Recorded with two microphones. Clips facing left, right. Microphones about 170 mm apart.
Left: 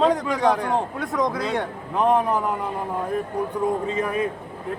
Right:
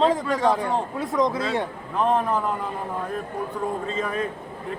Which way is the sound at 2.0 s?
15° left (ahead or behind).